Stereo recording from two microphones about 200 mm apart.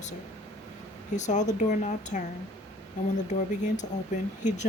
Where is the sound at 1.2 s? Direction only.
35° left (ahead or behind).